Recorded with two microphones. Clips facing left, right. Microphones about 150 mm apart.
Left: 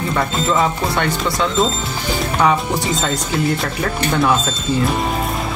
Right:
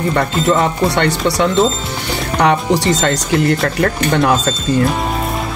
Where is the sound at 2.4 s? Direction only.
90° right.